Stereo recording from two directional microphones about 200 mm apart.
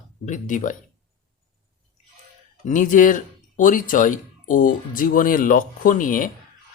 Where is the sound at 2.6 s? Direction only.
40° left (ahead or behind).